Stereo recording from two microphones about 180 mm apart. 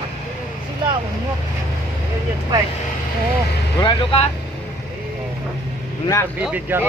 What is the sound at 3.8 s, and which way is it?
Speech, 30° left (ahead or behind).